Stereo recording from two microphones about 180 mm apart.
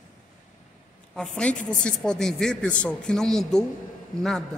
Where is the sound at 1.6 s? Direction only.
5° left (ahead or behind).